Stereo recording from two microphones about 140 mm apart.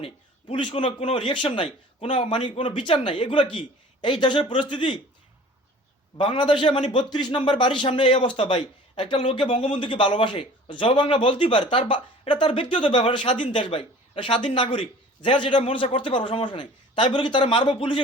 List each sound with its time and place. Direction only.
0.0 s a man's voice: 35° left (ahead or behind)
6.1 s speech: 35° left (ahead or behind)